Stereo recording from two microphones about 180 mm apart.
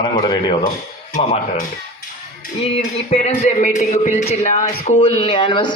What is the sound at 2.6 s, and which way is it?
Speech, 35° left (ahead or behind).